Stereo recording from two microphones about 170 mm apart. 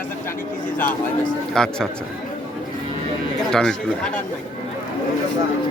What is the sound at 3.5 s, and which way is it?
Speech, 5° left (ahead or behind).